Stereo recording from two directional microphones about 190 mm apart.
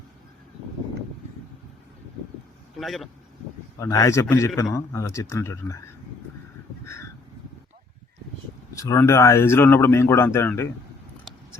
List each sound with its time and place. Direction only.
2.7 s speech: centre (ahead or behind)
3.8 s a man's voice: 15° left (ahead or behind)
6.8 s crow: 15° left (ahead or behind)
8.7 s a man's voice: 15° left (ahead or behind)
11.3 s a sound: centre (ahead or behind)